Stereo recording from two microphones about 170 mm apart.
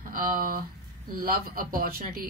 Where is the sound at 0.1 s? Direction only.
55° right (ahead or behind).